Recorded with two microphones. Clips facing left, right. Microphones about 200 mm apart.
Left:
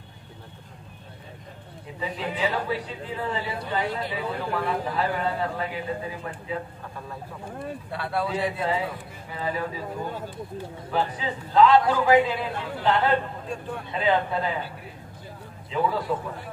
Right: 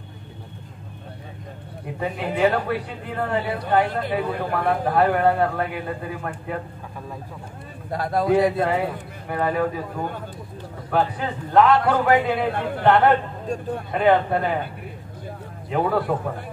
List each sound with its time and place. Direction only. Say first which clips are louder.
2.0 s a woman's voice: right 6 dB; 60° right (ahead or behind)
7.9 s a man's voice: right 9 dB; 40° right (ahead or behind)
9.3 s a woman's voice: right 7 dB; 55° right (ahead or behind)
15.7 s a woman's voice: right 4 dB; 60° right (ahead or behind)